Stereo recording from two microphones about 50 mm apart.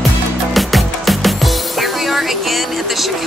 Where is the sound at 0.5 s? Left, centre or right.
Centre.